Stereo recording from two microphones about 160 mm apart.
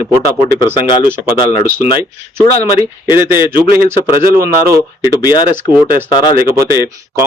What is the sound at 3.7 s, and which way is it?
Speech, 65° right (ahead or behind).